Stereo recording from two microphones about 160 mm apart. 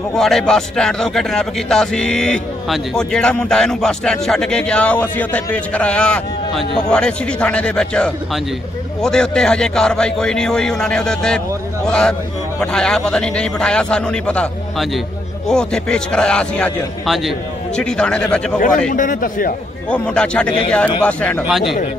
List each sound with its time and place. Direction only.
0.1 s speech: centre (ahead or behind)
18.9 s a man's voice: 55° left (ahead or behind)
19.9 s a man's voice: 5° left (ahead or behind)